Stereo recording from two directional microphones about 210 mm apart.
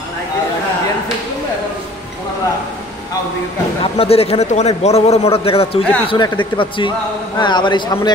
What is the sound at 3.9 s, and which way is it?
A man's voice, 30° left (ahead or behind).